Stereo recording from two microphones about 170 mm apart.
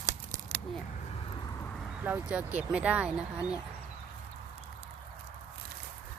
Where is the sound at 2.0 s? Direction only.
10° right (ahead or behind).